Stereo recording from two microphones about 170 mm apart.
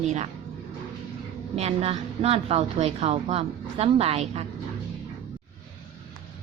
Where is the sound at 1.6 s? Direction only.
35° right (ahead or behind).